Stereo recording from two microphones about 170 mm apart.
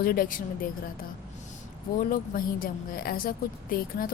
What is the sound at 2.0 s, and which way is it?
A woman's voice, 55° left (ahead or behind).